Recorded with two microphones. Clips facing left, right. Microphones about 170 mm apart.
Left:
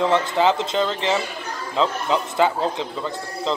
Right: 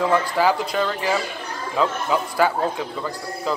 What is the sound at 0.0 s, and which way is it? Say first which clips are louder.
Speech: left 1 dB; 25° left (ahead or behind).